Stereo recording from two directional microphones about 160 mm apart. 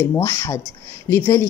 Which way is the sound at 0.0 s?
15° left (ahead or behind).